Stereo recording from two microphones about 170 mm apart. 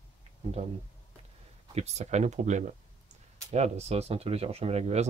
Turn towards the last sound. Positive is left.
turn(degrees=-40)  # may be behind; listen again after turning